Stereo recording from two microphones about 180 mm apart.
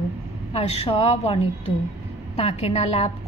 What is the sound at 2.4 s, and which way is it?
Speech, 35° left (ahead or behind).